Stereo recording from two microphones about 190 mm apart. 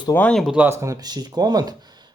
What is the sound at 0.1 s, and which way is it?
Speech, 5° left (ahead or behind).